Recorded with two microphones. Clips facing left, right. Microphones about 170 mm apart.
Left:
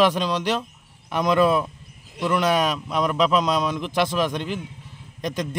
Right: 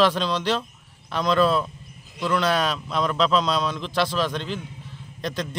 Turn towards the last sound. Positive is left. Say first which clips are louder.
# left 2 dB
turn(degrees=15)  # may be behind; listen again after turning